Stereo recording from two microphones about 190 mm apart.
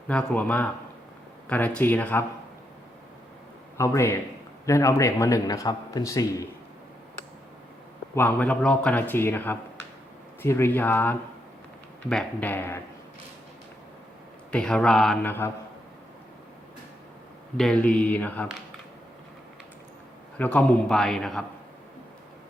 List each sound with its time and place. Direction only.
0.1 s a man's voice: 5° left (ahead or behind)
3.8 s a man's voice: 15° left (ahead or behind)
8.1 s a man's voice: 10° left (ahead or behind)
14.5 s speech: 5° left (ahead or behind)
17.6 s a man's voice: 5° left (ahead or behind)
20.4 s speech: 5° left (ahead or behind)